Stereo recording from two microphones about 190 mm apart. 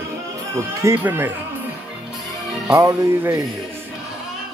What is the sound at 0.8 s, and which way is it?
Speech, 10° right (ahead or behind).